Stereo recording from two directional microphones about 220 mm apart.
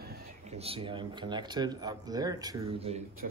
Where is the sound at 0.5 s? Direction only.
25° right (ahead or behind).